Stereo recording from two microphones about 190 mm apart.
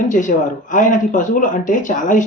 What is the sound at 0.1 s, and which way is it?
Speech, 45° left (ahead or behind).